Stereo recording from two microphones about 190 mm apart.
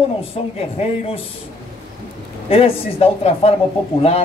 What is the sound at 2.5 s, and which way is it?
A man's voice, 30° left (ahead or behind).